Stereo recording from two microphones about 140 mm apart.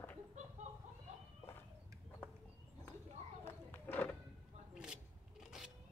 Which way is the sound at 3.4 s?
15° left (ahead or behind).